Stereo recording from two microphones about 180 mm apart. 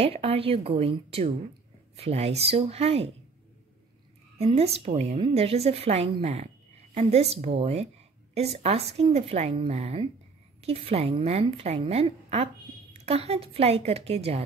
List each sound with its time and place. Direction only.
0.0 s a woman's voice: 35° right (ahead or behind)
4.4 s a woman's voice: 35° right (ahead or behind)